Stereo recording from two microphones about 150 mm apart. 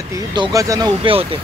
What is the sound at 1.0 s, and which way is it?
Speech, 40° right (ahead or behind).